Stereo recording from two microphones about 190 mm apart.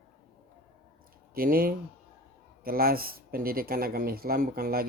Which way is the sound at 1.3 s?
50° right (ahead or behind).